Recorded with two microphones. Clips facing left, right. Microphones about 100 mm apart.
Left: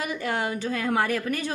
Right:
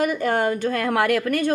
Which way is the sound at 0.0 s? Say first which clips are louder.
Right 7 dB; 50° right (ahead or behind).